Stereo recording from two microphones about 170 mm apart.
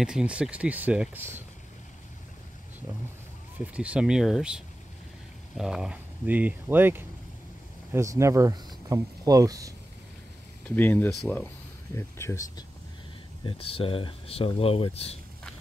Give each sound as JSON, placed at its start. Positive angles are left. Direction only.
{"t": 0.0, "sound": "speech", "side_deg": -5}
{"t": 3.5, "sound": "speech", "side_deg": -10}
{"t": 10.8, "sound": "speech", "side_deg": 10}
{"t": 13.5, "sound": "speech", "side_deg": 35}